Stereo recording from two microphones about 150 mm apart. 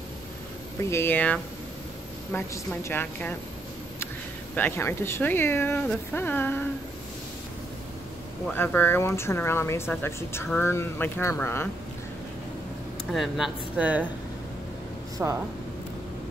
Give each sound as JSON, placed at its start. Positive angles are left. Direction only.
{"t": 0.8, "sound": "speech", "side_deg": 15}
{"t": 4.6, "sound": "speech", "side_deg": 15}
{"t": 8.5, "sound": "speech", "side_deg": 15}
{"t": 13.1, "sound": "speech", "side_deg": 0}
{"t": 15.2, "sound": "speech", "side_deg": -10}